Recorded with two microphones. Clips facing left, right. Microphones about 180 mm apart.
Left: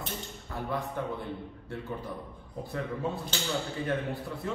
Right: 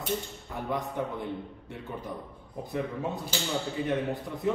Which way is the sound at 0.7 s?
15° right (ahead or behind).